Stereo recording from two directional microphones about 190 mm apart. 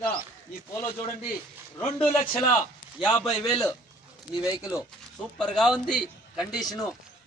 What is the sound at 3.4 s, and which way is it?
Speech, 20° left (ahead or behind).